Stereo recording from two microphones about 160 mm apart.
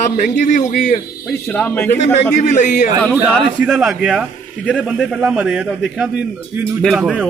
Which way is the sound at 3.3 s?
Centre (ahead or behind).